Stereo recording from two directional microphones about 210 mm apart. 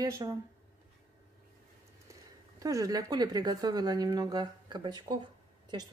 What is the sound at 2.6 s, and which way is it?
Speech, 15° right (ahead or behind).